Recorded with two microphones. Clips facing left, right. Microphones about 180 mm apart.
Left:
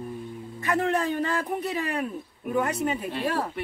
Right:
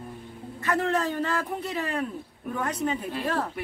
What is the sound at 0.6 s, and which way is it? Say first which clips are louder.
A man's voice: left 1 dB; 15° left (ahead or behind).